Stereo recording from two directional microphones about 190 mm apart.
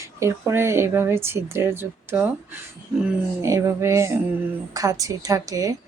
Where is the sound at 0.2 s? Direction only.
15° right (ahead or behind).